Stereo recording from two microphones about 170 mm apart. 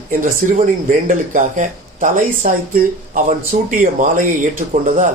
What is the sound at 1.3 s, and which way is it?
Speech, 50° right (ahead or behind).